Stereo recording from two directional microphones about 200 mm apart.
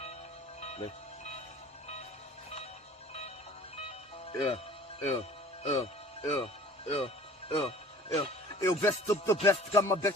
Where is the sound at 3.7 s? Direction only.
30° left (ahead or behind).